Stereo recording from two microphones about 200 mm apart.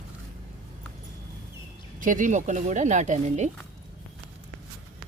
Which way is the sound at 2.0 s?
40° right (ahead or behind).